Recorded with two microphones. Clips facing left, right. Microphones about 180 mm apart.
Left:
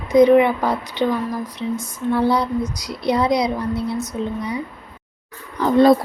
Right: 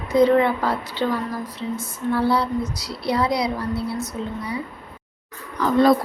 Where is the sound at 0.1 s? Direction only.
15° left (ahead or behind).